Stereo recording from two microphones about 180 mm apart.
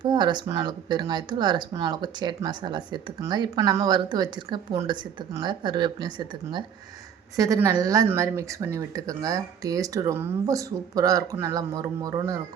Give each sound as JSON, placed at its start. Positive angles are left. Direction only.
{"t": 0.0, "sound": "speech", "side_deg": -25}